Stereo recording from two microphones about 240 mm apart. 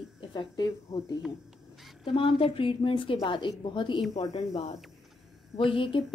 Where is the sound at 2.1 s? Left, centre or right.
Left.